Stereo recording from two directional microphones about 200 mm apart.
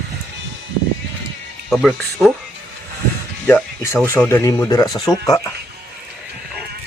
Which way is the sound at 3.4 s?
10° left (ahead or behind).